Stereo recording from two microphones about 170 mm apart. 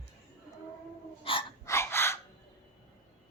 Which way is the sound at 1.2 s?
30° left (ahead or behind).